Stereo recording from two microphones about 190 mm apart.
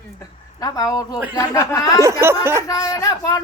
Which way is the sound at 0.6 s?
20° left (ahead or behind).